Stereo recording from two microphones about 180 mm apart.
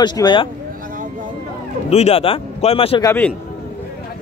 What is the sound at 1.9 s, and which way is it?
Speech, 35° left (ahead or behind).